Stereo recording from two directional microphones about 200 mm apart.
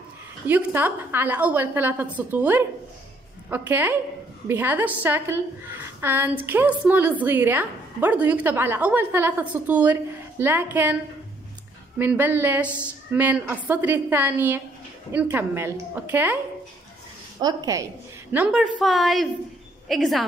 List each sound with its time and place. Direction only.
0.5 s a woman's voice: 10° right (ahead or behind)
12.0 s a woman's voice: 10° right (ahead or behind)
17.4 s a woman's voice: 20° right (ahead or behind)
18.3 s a woman's voice: 5° right (ahead or behind)